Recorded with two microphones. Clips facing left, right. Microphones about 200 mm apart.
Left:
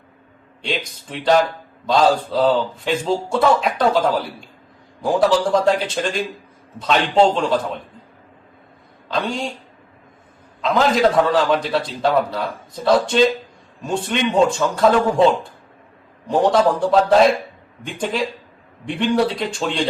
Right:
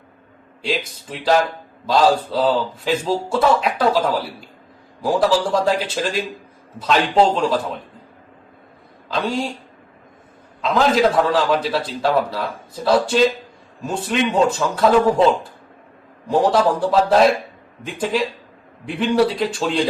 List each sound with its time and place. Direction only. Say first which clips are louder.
0.6 s a man's voice: right 2 dB; centre (ahead or behind)
10.6 s a man's voice: even; centre (ahead or behind)
16.3 s a man's voice: left 1 dB; 5° right (ahead or behind)